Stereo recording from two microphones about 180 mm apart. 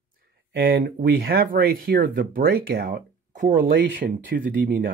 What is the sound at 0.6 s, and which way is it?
Speech, 60° right (ahead or behind).